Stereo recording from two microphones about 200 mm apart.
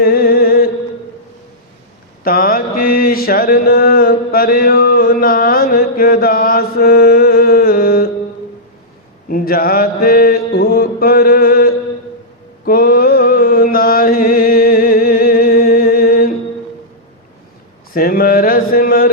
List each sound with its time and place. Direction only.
0.0 s a sound: 50° left (ahead or behind)
2.2 s mantra: 45° left (ahead or behind)
9.3 s mantra: 45° left (ahead or behind)
17.9 s mantra: 45° left (ahead or behind)